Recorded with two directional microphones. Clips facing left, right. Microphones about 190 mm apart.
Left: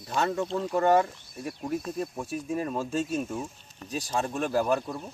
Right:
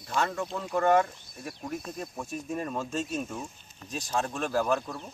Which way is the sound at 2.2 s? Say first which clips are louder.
Even; 5° left (ahead or behind).